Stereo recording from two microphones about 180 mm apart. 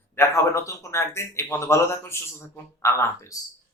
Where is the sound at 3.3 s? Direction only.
20° left (ahead or behind).